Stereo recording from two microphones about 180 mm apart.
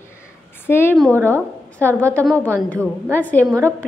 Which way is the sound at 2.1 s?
10° left (ahead or behind).